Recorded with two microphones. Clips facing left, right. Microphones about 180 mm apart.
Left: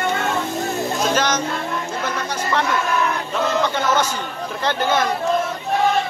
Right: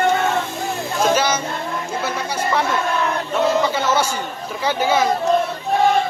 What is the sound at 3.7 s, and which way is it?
A man's voice, 10° right (ahead or behind).